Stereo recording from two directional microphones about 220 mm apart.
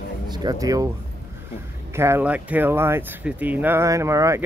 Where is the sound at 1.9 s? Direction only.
10° right (ahead or behind).